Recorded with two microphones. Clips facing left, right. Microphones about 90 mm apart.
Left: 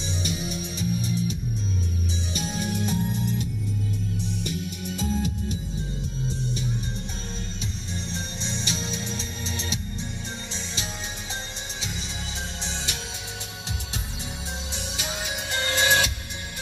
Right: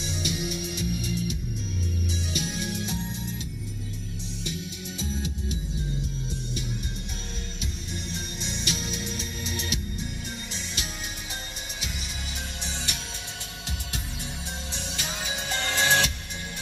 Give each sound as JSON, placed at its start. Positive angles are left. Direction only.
{"t": 0.0, "sound": "music", "side_deg": 35}
{"t": 2.3, "sound": "music", "side_deg": 40}
{"t": 6.2, "sound": "music", "side_deg": 35}
{"t": 8.1, "sound": "music", "side_deg": 30}
{"t": 14.7, "sound": "music", "side_deg": 10}